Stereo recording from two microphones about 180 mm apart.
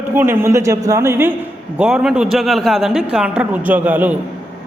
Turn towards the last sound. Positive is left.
turn(degrees=-10)  # may be behind; listen again after turning